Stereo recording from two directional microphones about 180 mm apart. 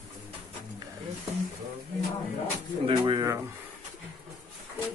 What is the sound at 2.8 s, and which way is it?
Speech, 25° right (ahead or behind).